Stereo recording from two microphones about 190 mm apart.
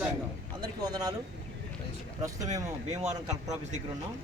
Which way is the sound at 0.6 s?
20° right (ahead or behind).